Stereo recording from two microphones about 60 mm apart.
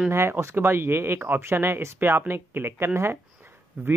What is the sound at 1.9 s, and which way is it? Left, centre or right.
Speech, right.